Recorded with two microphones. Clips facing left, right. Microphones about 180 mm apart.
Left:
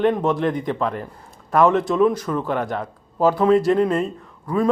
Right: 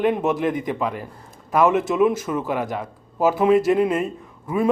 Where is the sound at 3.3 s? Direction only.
20° right (ahead or behind).